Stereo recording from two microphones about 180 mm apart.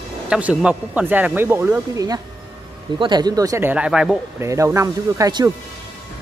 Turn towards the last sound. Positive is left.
turn(degrees=-20)  # may be behind; listen again after turning